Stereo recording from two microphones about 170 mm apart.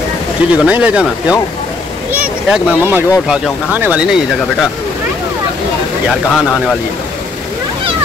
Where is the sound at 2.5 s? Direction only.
10° right (ahead or behind).